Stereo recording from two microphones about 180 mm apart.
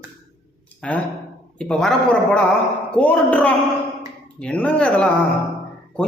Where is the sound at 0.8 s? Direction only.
5° left (ahead or behind).